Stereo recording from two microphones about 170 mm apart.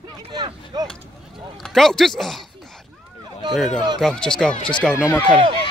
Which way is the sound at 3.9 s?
5° left (ahead or behind).